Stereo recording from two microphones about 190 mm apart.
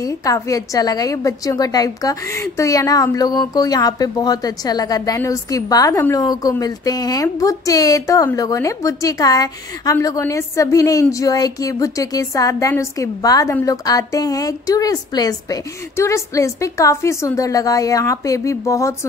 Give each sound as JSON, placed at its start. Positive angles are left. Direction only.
{"t": 0.0, "sound": "a woman's voice", "side_deg": 15}